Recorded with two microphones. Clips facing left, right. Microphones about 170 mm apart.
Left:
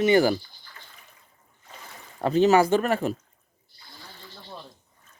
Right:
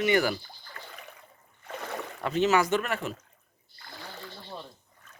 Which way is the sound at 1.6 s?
70° right (ahead or behind).